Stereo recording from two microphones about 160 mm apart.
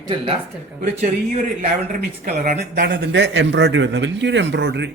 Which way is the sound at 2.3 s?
45° right (ahead or behind).